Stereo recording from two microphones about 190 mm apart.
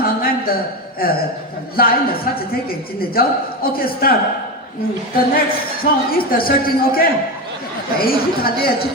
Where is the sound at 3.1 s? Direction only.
50° left (ahead or behind).